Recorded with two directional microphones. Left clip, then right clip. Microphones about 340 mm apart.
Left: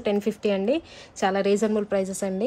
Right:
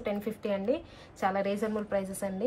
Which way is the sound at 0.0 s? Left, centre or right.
Left.